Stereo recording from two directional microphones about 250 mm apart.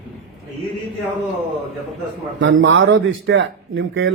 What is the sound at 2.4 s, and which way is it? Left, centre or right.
A man's voice, right.